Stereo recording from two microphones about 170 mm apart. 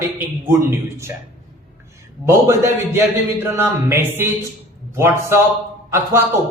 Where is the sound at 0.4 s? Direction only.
15° right (ahead or behind).